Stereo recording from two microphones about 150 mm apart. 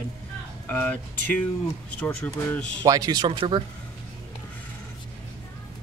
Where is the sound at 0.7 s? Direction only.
15° left (ahead or behind).